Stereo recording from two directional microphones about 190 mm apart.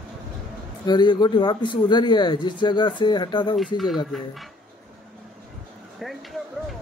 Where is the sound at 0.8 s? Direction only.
20° left (ahead or behind).